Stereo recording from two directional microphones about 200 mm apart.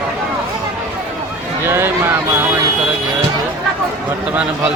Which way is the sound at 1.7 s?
10° right (ahead or behind).